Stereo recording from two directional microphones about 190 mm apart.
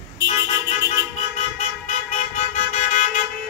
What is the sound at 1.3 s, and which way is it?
Vehicle, 40° left (ahead or behind).